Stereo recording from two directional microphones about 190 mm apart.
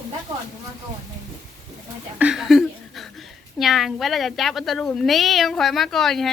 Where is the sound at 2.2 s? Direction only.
5° right (ahead or behind).